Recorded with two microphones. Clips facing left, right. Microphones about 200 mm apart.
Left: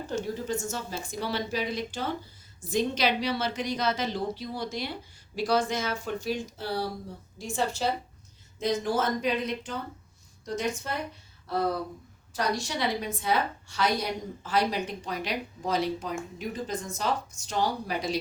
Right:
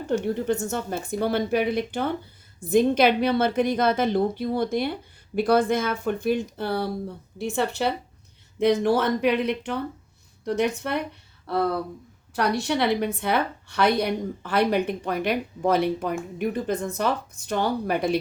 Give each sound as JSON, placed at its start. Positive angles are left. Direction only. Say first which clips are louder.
{"t": 0.3, "sound": "a woman's voice", "louder": "right 6 dB", "side_deg": -60}